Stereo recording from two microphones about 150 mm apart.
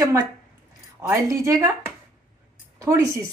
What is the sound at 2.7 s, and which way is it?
Speech, 20° right (ahead or behind).